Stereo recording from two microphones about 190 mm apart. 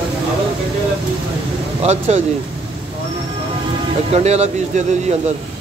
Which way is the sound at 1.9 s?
35° right (ahead or behind).